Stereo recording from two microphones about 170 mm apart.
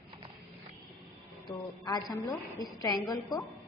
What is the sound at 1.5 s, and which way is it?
A woman's voice, 20° left (ahead or behind).